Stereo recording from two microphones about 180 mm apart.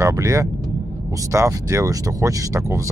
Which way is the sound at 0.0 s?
15° right (ahead or behind).